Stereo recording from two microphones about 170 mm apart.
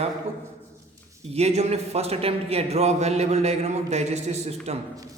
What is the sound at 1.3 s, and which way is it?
A man's voice, 40° right (ahead or behind).